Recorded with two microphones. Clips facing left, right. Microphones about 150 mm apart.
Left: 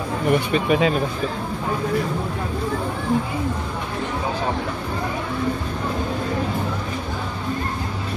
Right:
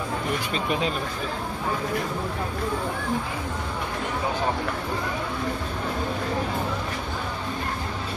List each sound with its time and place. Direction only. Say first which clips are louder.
0.3 s speech: left 10 dB; 70° left (ahead or behind)